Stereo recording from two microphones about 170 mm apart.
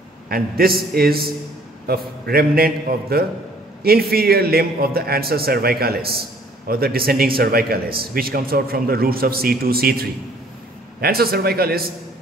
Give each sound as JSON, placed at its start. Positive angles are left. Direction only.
{"t": 0.3, "sound": "a man's voice", "side_deg": -60}